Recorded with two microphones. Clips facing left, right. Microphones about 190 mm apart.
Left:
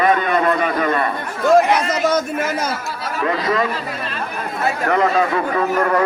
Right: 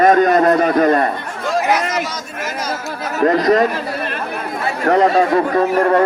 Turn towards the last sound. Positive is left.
turn(degrees=-35)  # may be behind; listen again after turning